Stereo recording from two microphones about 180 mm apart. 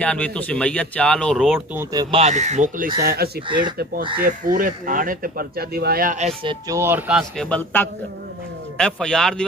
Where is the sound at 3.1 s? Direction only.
55° right (ahead or behind).